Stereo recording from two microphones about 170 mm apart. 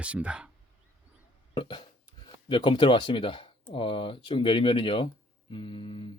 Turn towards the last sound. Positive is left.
turn(degrees=30)  # may be behind; listen again after turning